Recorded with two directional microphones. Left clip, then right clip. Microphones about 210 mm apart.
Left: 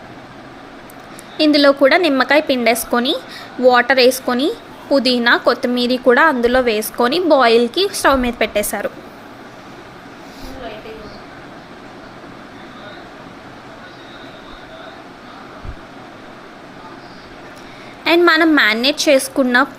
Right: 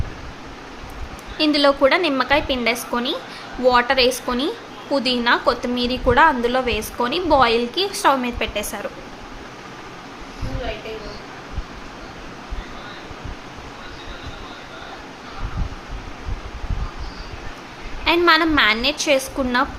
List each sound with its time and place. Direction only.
1.4 s a woman's voice: 20° left (ahead or behind)
18.0 s a woman's voice: 25° left (ahead or behind)